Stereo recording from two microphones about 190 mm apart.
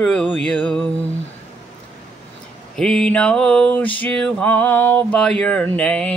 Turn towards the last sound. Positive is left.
turn(degrees=5)  # may be behind; listen again after turning